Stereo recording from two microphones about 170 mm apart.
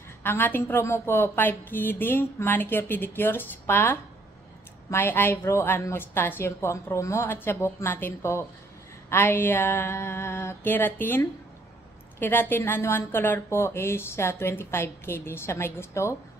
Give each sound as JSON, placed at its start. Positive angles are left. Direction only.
{"t": 0.2, "sound": "speech", "side_deg": 10}